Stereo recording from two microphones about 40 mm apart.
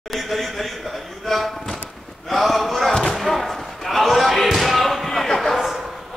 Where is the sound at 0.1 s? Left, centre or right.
Centre.